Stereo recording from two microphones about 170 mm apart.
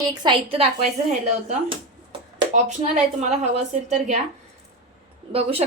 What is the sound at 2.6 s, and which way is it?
A woman's voice, 45° right (ahead or behind).